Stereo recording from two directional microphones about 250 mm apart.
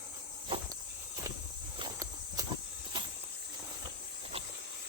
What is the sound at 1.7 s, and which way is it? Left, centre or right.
Walk, centre.